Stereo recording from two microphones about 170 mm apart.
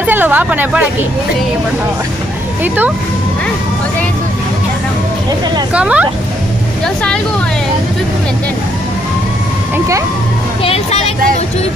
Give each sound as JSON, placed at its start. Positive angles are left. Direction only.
{"t": 0.0, "sound": "speech", "side_deg": -10}
{"t": 2.6, "sound": "speech", "side_deg": -10}
{"t": 5.7, "sound": "speech", "side_deg": -5}
{"t": 10.6, "sound": "speech", "side_deg": 35}